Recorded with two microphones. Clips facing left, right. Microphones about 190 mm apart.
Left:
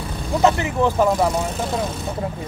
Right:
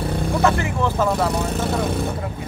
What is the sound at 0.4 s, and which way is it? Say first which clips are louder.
Speech: left 4 dB; 20° left (ahead or behind).